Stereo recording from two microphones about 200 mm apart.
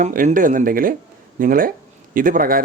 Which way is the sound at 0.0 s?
40° right (ahead or behind).